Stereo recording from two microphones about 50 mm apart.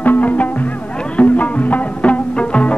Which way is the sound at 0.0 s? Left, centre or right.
Left.